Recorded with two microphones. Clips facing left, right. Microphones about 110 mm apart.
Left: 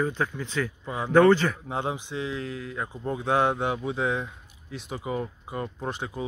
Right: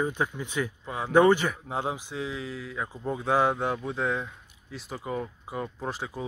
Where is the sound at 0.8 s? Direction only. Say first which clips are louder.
Left 2 dB; centre (ahead or behind).